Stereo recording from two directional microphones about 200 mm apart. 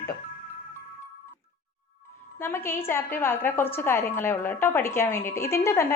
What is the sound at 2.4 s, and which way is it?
A woman's voice, 10° left (ahead or behind).